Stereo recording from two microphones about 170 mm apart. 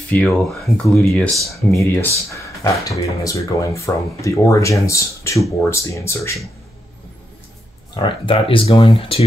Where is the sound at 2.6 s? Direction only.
20° left (ahead or behind).